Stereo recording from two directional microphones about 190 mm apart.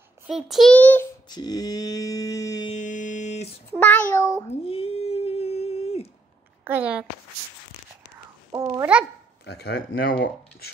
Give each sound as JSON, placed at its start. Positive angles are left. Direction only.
{"t": 0.3, "sound": "child singing", "side_deg": 0}
{"t": 1.3, "sound": "mantra", "side_deg": 20}
{"t": 2.7, "sound": "music", "side_deg": 40}
{"t": 3.8, "sound": "meow", "side_deg": 10}
{"t": 4.5, "sound": "humming", "side_deg": 30}
{"t": 6.6, "sound": "speech", "side_deg": -10}
{"t": 8.5, "sound": "a child's voice", "side_deg": -15}
{"t": 9.5, "sound": "speech", "side_deg": 60}